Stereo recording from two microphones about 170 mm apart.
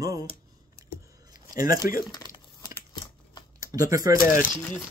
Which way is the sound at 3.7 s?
20° right (ahead or behind).